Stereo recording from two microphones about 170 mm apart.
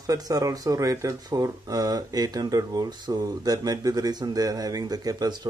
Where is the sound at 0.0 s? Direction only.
20° right (ahead or behind).